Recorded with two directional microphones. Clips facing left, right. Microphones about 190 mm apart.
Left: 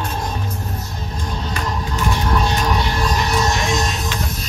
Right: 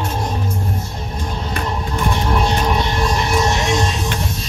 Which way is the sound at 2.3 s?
25° right (ahead or behind).